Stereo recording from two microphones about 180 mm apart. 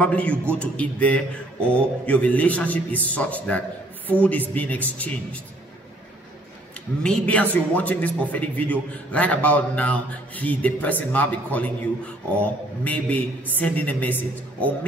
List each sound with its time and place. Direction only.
0.0 s a man's voice: 5° left (ahead or behind)
7.0 s a man's voice: 5° left (ahead or behind)